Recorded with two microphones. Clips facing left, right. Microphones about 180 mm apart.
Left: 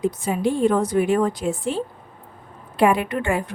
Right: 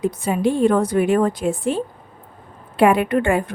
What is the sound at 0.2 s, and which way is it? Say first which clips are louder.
A woman's voice: right 4 dB; 60° right (ahead or behind).